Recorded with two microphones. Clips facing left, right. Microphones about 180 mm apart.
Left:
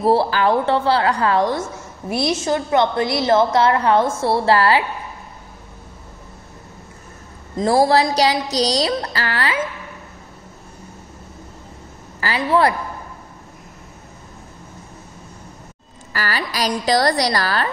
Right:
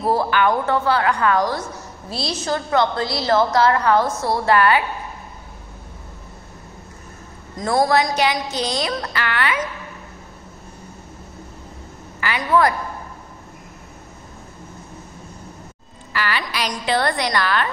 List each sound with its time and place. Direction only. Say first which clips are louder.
0.0 s a woman's voice: left 2 dB; 30° left (ahead or behind)
7.5 s a woman's voice: left 3 dB; 30° left (ahead or behind)
12.2 s a woman's voice: left 1 dB; 30° left (ahead or behind)
16.1 s a woman's voice: even; 40° left (ahead or behind)